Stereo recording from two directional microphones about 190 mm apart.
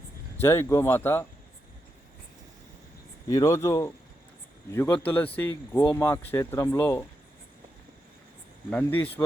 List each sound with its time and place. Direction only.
0.3 s speech: 10° left (ahead or behind)
3.2 s speech: 15° left (ahead or behind)
8.7 s speech: 10° left (ahead or behind)